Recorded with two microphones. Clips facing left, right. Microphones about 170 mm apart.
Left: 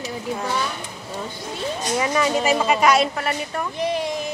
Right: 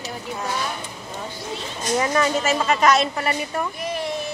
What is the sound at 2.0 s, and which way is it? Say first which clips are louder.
A woman's voice: even; 10° left (ahead or behind).